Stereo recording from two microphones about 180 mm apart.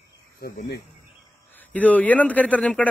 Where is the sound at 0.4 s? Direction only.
60° left (ahead or behind).